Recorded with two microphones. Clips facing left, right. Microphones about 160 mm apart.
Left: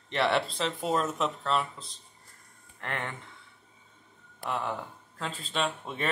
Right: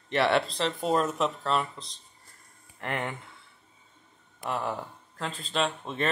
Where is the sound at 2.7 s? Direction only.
10° right (ahead or behind).